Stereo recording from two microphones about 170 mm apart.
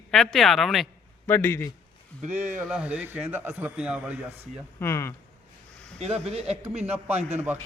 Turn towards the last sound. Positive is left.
turn(degrees=-10)  # may be behind; listen again after turning